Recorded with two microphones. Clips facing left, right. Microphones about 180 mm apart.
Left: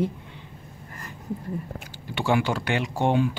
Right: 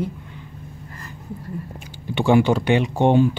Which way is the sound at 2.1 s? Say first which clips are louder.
Right 7 dB; 20° right (ahead or behind).